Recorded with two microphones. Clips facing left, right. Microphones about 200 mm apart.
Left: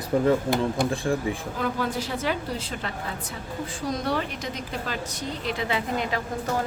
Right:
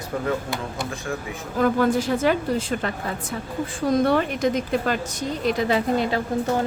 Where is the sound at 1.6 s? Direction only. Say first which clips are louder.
Right 9 dB; 50° right (ahead or behind).